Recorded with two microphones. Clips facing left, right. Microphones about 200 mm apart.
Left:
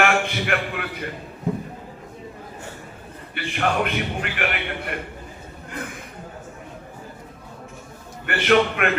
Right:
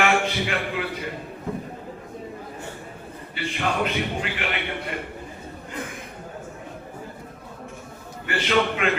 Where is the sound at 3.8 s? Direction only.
60° left (ahead or behind).